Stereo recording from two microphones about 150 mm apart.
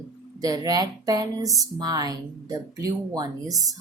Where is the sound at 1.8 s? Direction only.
25° right (ahead or behind).